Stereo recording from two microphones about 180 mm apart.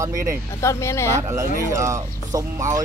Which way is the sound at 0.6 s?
15° left (ahead or behind).